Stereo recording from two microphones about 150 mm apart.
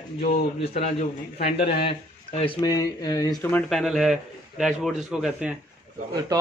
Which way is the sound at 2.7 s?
25° left (ahead or behind).